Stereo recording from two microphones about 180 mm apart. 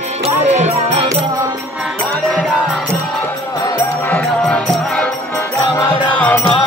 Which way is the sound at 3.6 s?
15° left (ahead or behind).